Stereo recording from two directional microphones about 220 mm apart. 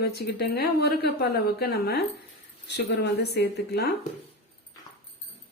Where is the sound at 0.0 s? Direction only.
45° left (ahead or behind).